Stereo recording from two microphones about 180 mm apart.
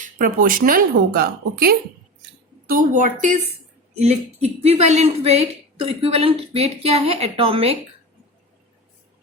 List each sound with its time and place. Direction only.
0.0 s a woman's voice: 45° right (ahead or behind); by 7.8 s 30° right (ahead or behind)